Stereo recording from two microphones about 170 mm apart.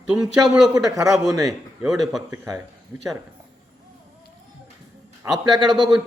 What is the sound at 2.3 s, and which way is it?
Speech, 15° right (ahead or behind).